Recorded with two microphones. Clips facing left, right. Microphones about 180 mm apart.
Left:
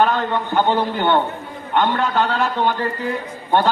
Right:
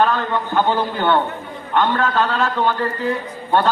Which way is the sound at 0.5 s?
20° left (ahead or behind).